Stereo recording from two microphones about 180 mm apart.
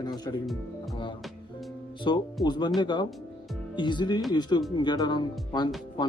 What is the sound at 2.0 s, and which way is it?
Speech, 25° left (ahead or behind).